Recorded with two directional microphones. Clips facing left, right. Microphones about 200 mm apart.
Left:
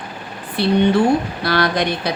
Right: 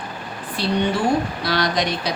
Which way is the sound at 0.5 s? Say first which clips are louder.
Left 6 dB; 60° left (ahead or behind).